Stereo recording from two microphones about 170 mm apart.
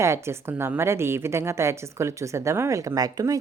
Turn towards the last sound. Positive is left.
turn(degrees=-20)  # may be behind; listen again after turning